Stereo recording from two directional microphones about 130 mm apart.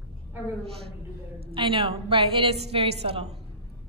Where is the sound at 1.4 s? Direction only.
40° right (ahead or behind).